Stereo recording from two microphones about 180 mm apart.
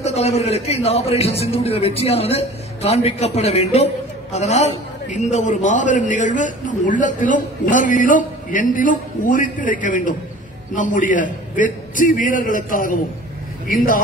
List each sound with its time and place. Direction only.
0.0 s a man's voice: 35° left (ahead or behind)